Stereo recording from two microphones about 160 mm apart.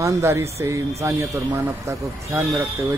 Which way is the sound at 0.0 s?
15° right (ahead or behind).